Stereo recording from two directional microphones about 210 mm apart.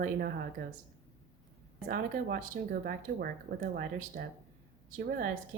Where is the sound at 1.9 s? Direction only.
40° right (ahead or behind).